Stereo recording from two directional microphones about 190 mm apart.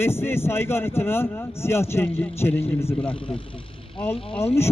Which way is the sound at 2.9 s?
30° left (ahead or behind).